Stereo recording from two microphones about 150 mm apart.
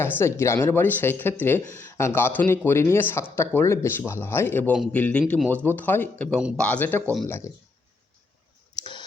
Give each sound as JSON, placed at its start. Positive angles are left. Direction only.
{"t": 0.0, "sound": "speech", "side_deg": 15}
{"t": 8.8, "sound": "clicking", "side_deg": 30}